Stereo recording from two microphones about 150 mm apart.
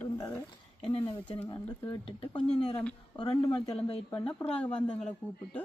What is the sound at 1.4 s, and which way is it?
Speech, 30° left (ahead or behind).